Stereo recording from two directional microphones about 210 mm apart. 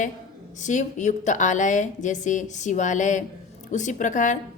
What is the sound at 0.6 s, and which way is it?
A woman's voice, 35° left (ahead or behind).